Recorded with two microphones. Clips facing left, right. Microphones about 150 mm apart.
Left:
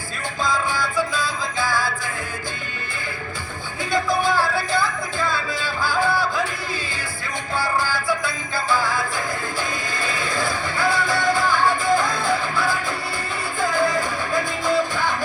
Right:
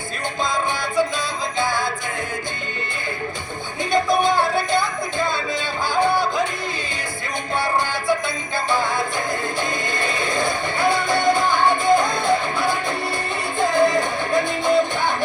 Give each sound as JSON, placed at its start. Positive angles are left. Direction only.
{"t": 0.4, "sound": "music", "side_deg": -20}
{"t": 3.9, "sound": "music", "side_deg": -20}
{"t": 7.6, "sound": "music", "side_deg": -25}